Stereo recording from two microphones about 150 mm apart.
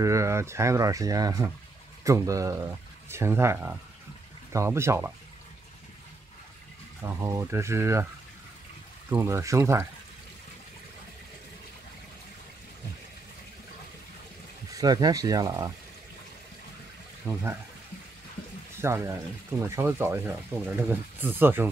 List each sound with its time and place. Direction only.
0.0 s speech: 20° right (ahead or behind)
7.0 s speech: 15° right (ahead or behind)
9.1 s speech: 20° right (ahead or behind)
14.7 s speech: 25° right (ahead or behind)
17.3 s speech: 15° right (ahead or behind)
18.8 s speech: 15° right (ahead or behind)